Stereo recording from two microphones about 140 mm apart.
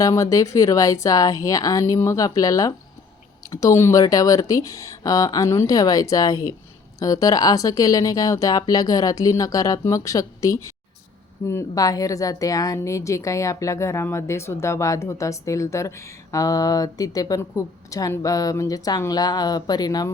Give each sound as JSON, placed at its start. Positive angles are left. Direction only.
{"t": 0.0, "sound": "a woman's voice", "side_deg": 25}